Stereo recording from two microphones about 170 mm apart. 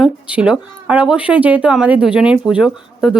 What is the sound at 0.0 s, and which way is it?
Speech, 5° right (ahead or behind).